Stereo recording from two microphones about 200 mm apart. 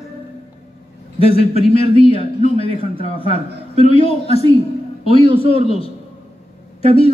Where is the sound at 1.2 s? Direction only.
30° left (ahead or behind).